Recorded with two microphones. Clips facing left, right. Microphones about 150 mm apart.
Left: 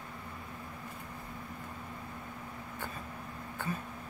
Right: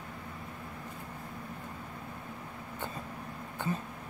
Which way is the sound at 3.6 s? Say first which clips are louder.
Right 3 dB; 20° right (ahead or behind).